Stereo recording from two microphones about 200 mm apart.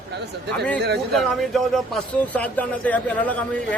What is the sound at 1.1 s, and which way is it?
A man's voice, centre (ahead or behind).